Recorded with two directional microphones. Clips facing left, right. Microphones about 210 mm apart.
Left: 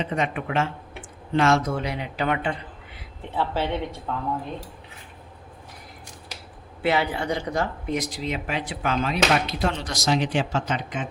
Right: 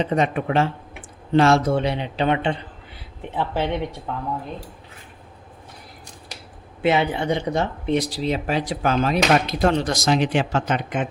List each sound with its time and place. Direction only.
0.0 s speech: 35° right (ahead or behind)
3.2 s a woman's voice: 15° right (ahead or behind)
6.8 s speech: 20° right (ahead or behind); by 11.1 s 60° right (ahead or behind)